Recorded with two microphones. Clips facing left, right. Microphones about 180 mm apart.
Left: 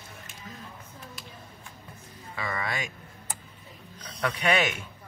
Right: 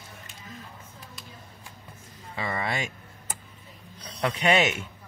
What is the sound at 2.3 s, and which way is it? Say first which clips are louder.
Speech: right 3 dB; 25° right (ahead or behind).